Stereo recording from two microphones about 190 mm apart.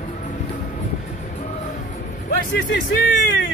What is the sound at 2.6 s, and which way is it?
Speech, 70° left (ahead or behind).